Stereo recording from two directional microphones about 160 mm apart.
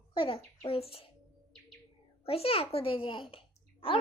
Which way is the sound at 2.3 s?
35° left (ahead or behind).